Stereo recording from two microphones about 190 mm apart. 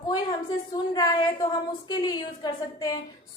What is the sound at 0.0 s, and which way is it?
A woman's voice, 20° left (ahead or behind).